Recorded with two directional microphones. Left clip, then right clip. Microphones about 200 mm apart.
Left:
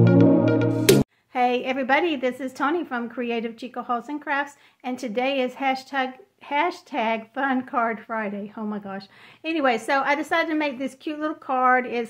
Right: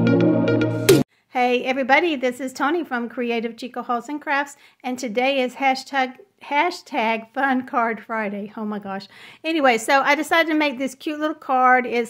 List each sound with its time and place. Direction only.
0.0 s music: centre (ahead or behind)
1.3 s a woman's voice: 25° right (ahead or behind)